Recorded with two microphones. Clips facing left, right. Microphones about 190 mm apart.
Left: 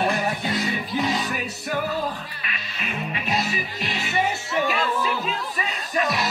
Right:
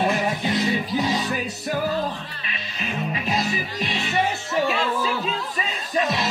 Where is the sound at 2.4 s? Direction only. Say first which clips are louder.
Right 3 dB; 30° right (ahead or behind).